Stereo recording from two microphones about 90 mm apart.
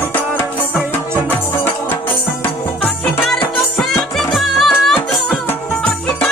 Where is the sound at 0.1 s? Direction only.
20° left (ahead or behind).